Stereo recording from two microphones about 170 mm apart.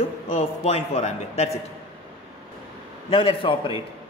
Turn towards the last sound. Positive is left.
turn(degrees=30)  # may be behind; listen again after turning